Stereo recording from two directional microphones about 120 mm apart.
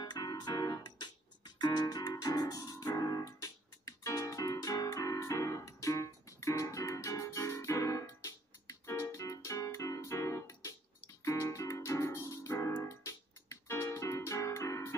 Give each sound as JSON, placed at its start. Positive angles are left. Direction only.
{"t": 0.0, "sound": "music", "side_deg": 35}